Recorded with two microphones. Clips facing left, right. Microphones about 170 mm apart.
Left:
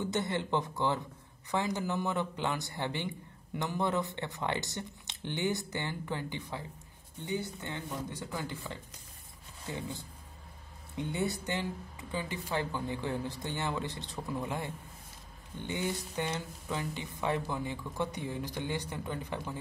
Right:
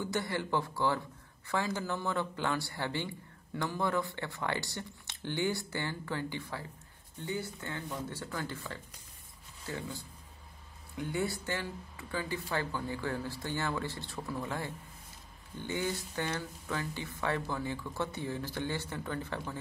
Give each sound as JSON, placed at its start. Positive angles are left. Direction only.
{"t": 0.0, "sound": "speech", "side_deg": 20}
{"t": 11.0, "sound": "speech", "side_deg": 20}